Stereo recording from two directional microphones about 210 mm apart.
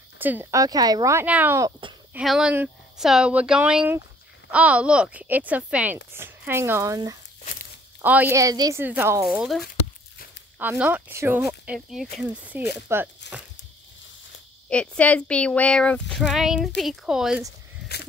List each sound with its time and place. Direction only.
0.2 s speech: 10° right (ahead or behind)
14.7 s speech: 5° left (ahead or behind)